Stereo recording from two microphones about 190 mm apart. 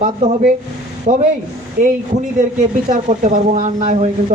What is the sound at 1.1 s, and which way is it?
Speech, 40° right (ahead or behind).